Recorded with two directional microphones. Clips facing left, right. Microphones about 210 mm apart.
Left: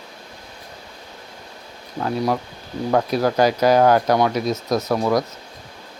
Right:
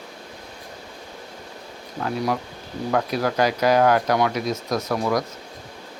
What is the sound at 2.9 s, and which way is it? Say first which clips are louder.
Speech: left 4 dB; 30° left (ahead or behind).